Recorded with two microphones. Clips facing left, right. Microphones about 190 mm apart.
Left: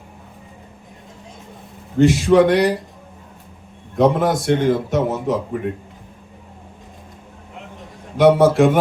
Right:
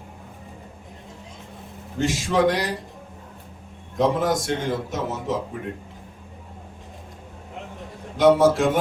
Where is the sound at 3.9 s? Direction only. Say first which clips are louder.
Left 5 dB; 60° left (ahead or behind).